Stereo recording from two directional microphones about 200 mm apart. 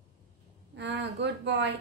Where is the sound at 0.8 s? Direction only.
60° right (ahead or behind).